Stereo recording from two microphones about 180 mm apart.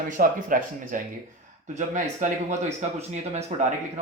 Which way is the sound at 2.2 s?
45° right (ahead or behind).